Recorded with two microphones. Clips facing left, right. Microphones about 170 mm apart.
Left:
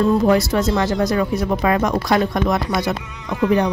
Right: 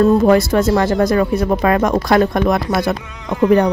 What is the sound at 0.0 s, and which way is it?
Speech, 55° right (ahead or behind).